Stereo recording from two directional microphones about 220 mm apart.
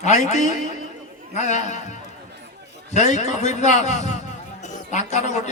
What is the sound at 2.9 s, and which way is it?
A man's voice, 30° left (ahead or behind).